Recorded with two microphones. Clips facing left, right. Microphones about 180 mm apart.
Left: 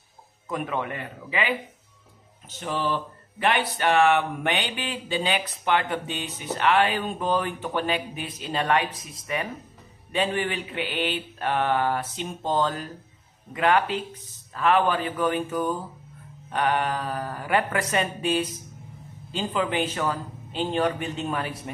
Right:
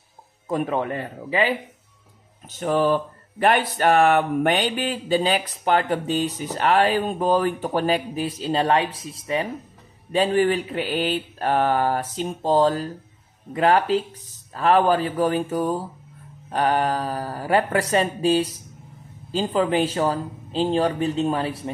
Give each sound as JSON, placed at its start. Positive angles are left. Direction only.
{"t": 0.5, "sound": "speech", "side_deg": -35}
{"t": 2.6, "sound": "speech", "side_deg": -45}